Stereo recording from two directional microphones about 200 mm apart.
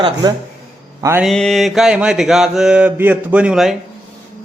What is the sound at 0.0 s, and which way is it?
Speech, 20° right (ahead or behind).